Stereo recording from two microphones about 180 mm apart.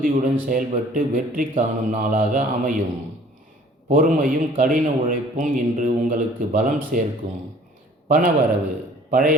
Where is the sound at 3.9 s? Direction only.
50° right (ahead or behind).